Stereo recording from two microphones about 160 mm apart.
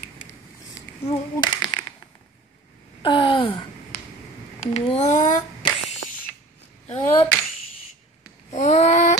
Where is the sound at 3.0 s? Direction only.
30° left (ahead or behind).